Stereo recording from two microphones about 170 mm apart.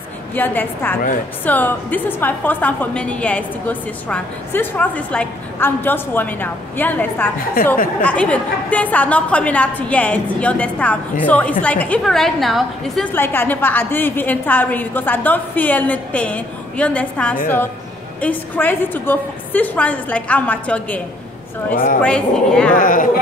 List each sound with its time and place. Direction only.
0.3 s a woman's voice: 10° left (ahead or behind)
7.6 s speech: 60° left (ahead or behind)
8.0 s a woman's voice: 5° left (ahead or behind)
22.0 s speech: 5° left (ahead or behind)
22.8 s speech: 55° left (ahead or behind)